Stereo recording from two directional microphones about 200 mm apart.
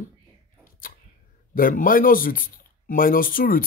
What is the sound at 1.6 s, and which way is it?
Speech, 45° left (ahead or behind).